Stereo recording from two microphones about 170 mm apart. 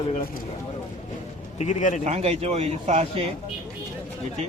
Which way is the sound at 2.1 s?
40° right (ahead or behind).